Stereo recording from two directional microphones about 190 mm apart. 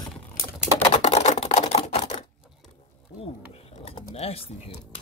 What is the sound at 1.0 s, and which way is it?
Camera, 35° left (ahead or behind).